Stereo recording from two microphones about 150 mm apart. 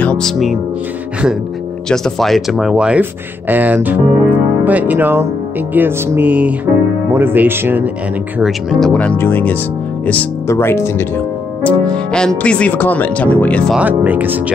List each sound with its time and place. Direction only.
0.0 s speech: 5° left (ahead or behind)
1.9 s speech: 5° left (ahead or behind); by 7.9 s 15° right (ahead or behind)
8.4 s speech: centre (ahead or behind)
13.7 s speech: 10° right (ahead or behind)